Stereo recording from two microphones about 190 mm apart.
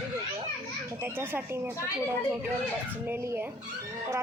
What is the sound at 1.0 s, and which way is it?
Speech, 10° right (ahead or behind).